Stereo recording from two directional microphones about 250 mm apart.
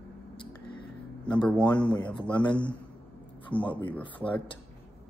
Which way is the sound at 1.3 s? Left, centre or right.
Centre.